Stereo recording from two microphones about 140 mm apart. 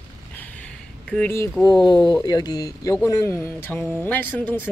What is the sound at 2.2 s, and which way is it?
Speech, 30° left (ahead or behind).